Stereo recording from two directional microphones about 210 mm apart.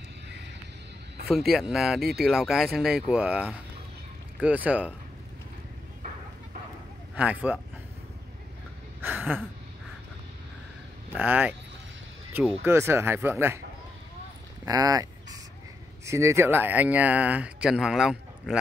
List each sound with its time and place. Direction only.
1.2 s speech: centre (ahead or behind)
7.2 s speech: 5° right (ahead or behind)
9.0 s a sound: 10° right (ahead or behind)
11.1 s speech: 10° right (ahead or behind)
14.6 s speech: 15° right (ahead or behind)
16.1 s speech: 15° right (ahead or behind)